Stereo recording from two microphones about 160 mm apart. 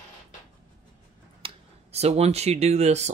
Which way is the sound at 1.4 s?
40° right (ahead or behind).